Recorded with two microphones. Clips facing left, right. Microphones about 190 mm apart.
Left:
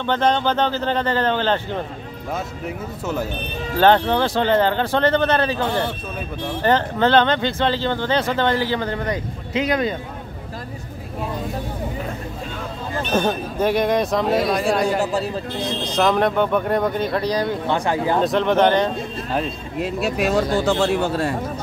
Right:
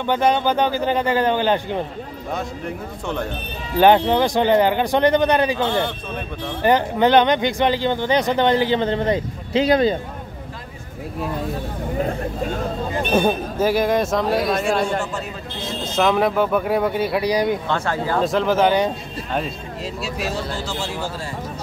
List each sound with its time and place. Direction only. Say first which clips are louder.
0.0 s speech: right 1 dB; 10° right (ahead or behind)
2.3 s speech: right 1 dB; 5° left (ahead or behind)
3.7 s speech: right 2 dB; 15° right (ahead or behind)
6.6 s speech: right 2 dB; 15° right (ahead or behind); by 9.9 s 30° right (ahead or behind)
13.1 s speech: right 2 dB; 10° right (ahead or behind)
17.6 s speech: left 2 dB; 15° left (ahead or behind)
18.2 s speech: even; centre (ahead or behind)
19.8 s speech: left 6 dB; 55° left (ahead or behind)